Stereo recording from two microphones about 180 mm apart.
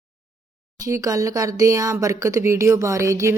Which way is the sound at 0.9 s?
20° right (ahead or behind).